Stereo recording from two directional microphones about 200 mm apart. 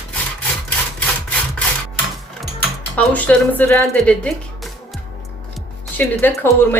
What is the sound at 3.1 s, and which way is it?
Speech, 10° left (ahead or behind).